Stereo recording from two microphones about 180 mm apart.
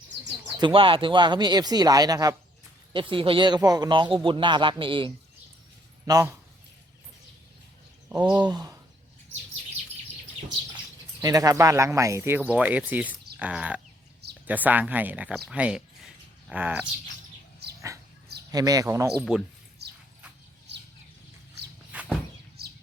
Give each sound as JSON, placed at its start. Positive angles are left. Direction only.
{"t": 0.5, "sound": "a man's voice", "side_deg": -25}
{"t": 8.1, "sound": "a man's voice", "side_deg": -25}
{"t": 11.2, "sound": "speech", "side_deg": -20}
{"t": 18.5, "sound": "a man's voice", "side_deg": -20}
{"t": 19.3, "sound": "speech", "side_deg": -5}
{"t": 19.8, "sound": "a sound", "side_deg": -65}
{"t": 21.9, "sound": "a sound", "side_deg": -10}
{"t": 22.6, "sound": "bird", "side_deg": -60}